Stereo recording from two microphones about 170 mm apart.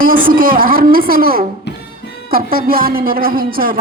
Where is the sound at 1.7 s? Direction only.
90° left.